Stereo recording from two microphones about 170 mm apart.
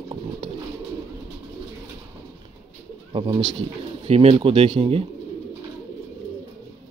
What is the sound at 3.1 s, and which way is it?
Speech, 30° right (ahead or behind).